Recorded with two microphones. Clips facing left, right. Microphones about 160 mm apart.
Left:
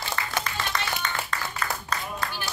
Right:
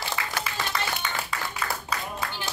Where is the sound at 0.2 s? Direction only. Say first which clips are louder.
Even; 10° right (ahead or behind).